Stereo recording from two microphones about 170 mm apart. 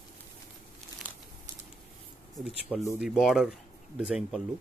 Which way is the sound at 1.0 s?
10° left (ahead or behind).